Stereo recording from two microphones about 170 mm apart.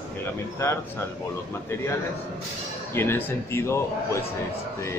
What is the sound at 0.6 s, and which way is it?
Speech, 15° left (ahead or behind).